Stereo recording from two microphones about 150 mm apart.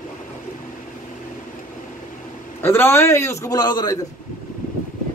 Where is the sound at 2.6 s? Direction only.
15° left (ahead or behind).